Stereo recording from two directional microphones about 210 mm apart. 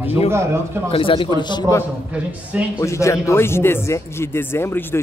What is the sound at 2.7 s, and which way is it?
Speech, 15° left (ahead or behind).